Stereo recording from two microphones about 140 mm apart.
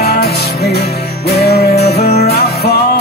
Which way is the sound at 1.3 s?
50° left (ahead or behind).